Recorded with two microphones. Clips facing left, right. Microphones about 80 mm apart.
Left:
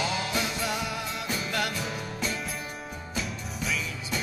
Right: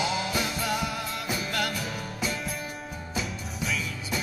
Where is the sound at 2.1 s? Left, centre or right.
Centre.